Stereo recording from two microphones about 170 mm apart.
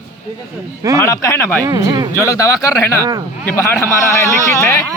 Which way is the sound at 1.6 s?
25° right (ahead or behind).